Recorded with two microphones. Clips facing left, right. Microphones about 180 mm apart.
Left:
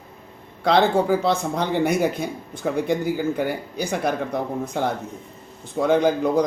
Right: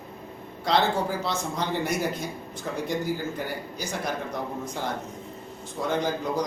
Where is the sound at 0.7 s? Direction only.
60° left (ahead or behind).